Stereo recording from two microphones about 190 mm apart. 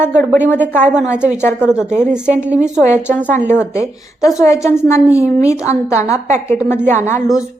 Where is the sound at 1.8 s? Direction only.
10° left (ahead or behind).